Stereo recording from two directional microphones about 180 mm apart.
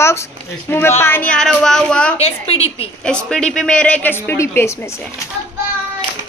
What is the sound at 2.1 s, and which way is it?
Speech, 35° left (ahead or behind).